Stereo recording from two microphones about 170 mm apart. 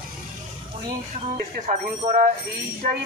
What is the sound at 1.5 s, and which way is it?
Speech, 50° right (ahead or behind).